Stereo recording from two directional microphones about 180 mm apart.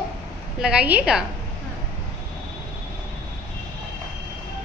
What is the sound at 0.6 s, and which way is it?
Speech, 5° right (ahead or behind).